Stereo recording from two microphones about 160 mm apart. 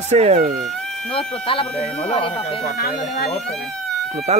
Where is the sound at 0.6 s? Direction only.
Centre (ahead or behind).